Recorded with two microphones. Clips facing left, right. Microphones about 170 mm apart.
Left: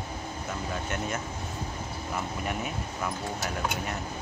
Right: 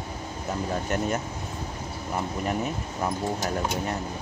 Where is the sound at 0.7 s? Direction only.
35° right (ahead or behind).